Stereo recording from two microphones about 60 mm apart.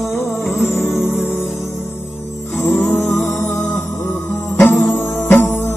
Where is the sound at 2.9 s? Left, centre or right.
Left.